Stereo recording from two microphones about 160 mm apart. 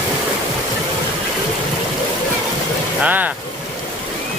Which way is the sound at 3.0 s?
10° right (ahead or behind).